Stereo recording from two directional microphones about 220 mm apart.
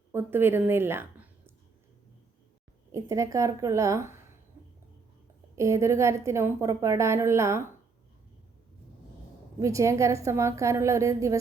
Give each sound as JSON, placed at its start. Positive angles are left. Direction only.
{"t": 0.1, "sound": "a woman's voice", "side_deg": -10}
{"t": 2.9, "sound": "a woman's voice", "side_deg": -15}
{"t": 5.5, "sound": "a woman's voice", "side_deg": -15}
{"t": 9.6, "sound": "a woman's voice", "side_deg": -15}